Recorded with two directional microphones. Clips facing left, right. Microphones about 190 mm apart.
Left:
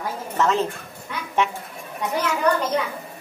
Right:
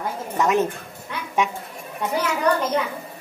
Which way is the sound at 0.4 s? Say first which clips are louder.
Right 1 dB; 15° right (ahead or behind).